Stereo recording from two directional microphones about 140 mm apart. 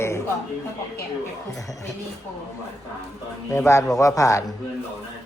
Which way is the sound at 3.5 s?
20° left (ahead or behind).